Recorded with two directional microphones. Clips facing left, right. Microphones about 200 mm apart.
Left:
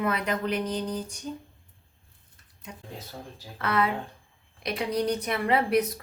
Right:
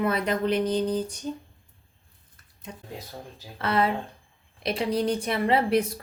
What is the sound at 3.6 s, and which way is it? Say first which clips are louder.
A woman's voice: right 2 dB; 30° right (ahead or behind).